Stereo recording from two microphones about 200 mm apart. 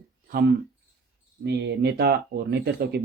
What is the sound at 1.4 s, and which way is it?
Speech, 55° right (ahead or behind).